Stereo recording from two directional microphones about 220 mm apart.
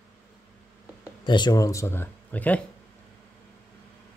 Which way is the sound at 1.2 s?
20° left (ahead or behind).